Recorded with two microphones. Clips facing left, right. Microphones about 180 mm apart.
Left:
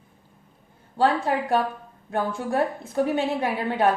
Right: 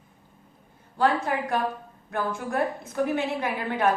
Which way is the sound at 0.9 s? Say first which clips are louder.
Left 2 dB; 30° left (ahead or behind).